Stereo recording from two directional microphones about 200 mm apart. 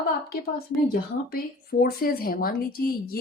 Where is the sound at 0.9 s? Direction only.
50° left (ahead or behind).